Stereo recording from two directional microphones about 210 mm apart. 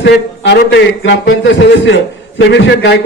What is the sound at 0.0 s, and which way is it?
A man's voice, 55° left (ahead or behind).